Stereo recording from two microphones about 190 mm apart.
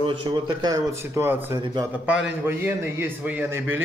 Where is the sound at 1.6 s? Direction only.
25° right (ahead or behind).